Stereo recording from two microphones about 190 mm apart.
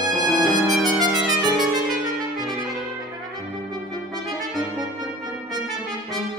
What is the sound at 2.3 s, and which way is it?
Trumpet, 20° right (ahead or behind).